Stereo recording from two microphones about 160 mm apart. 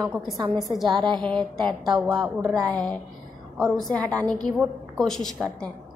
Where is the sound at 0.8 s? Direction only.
30° right (ahead or behind).